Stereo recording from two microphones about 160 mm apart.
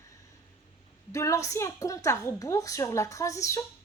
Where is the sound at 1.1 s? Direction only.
20° left (ahead or behind).